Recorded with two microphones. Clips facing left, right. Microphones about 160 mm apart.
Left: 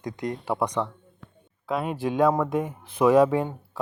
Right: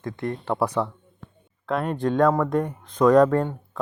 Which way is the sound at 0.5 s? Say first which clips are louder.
Right 3 dB; 5° right (ahead or behind).